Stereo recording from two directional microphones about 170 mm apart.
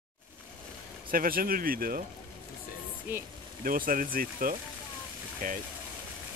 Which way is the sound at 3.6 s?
55° right (ahead or behind).